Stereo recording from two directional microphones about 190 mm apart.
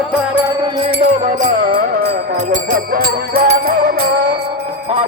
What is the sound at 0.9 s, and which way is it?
Music, 45° right (ahead or behind).